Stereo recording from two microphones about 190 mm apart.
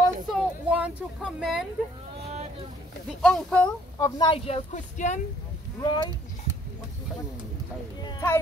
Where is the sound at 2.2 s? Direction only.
35° right (ahead or behind).